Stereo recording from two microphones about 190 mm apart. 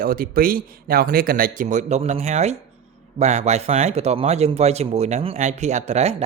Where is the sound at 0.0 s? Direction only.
50° right (ahead or behind).